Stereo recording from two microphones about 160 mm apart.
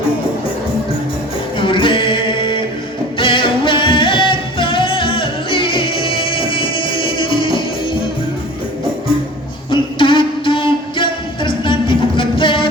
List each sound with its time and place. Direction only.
1.5 s music: 30° left (ahead or behind)
9.6 s music: 30° left (ahead or behind)